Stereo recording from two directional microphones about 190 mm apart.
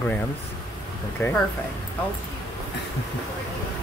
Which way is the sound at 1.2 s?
15° left (ahead or behind).